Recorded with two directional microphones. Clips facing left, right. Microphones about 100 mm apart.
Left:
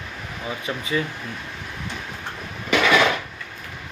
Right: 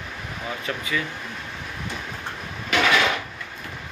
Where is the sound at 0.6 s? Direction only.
30° left (ahead or behind).